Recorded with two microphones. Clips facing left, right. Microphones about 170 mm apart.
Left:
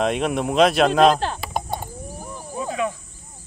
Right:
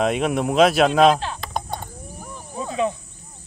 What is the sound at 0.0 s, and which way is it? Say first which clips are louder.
Speech: right 1 dB; centre (ahead or behind).